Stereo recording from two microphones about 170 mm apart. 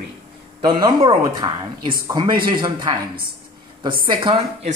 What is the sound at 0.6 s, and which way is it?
A woman's voice, 30° right (ahead or behind).